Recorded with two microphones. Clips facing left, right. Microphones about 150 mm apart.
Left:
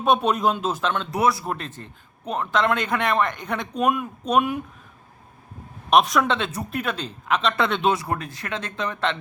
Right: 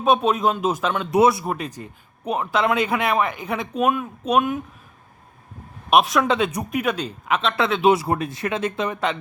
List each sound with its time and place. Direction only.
0.0 s a man's voice: centre (ahead or behind)
1.1 s speech: 20° right (ahead or behind)
1.5 s a man's voice: 10° right (ahead or behind)
5.9 s a man's voice: centre (ahead or behind)
7.9 s a man's voice: 20° right (ahead or behind)